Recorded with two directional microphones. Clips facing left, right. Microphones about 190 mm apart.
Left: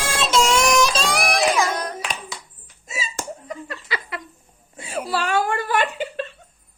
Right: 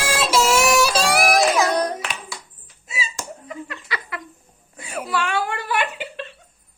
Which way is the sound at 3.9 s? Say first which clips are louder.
Left 4 dB; 25° left (ahead or behind).